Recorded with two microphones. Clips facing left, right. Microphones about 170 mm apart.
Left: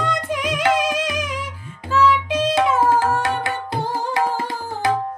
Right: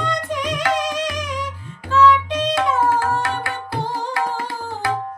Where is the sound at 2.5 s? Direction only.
15° left (ahead or behind).